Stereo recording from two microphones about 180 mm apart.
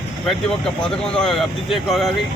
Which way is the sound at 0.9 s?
5° left (ahead or behind).